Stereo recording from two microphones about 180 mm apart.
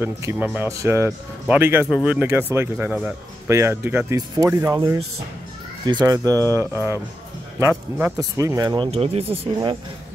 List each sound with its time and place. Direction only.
0.0 s speech: 10° right (ahead or behind)
8.0 s speech: 15° right (ahead or behind); by 9.5 s 35° right (ahead or behind)